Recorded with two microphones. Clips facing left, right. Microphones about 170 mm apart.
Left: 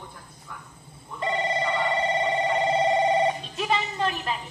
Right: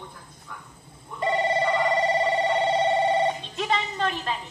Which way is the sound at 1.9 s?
Centre (ahead or behind).